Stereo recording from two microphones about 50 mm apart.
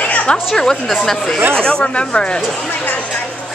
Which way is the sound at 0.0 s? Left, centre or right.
Left.